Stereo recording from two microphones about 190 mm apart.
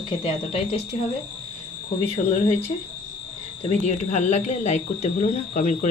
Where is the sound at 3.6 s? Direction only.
35° left (ahead or behind).